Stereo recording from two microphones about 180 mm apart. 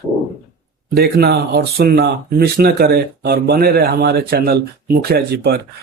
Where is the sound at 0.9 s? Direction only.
60° right (ahead or behind).